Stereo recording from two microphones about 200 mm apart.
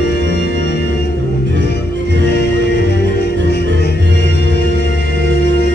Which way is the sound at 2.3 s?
55° left (ahead or behind).